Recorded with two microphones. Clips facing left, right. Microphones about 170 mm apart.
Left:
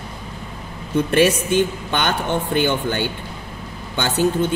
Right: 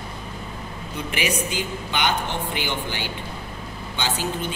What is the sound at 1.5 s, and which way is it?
Speech, 90° right.